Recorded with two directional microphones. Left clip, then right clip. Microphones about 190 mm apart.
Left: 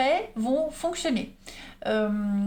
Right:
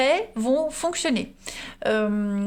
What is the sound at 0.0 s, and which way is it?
Speech, 50° right (ahead or behind).